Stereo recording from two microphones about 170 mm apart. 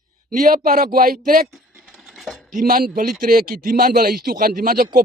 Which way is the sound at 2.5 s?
55° right (ahead or behind).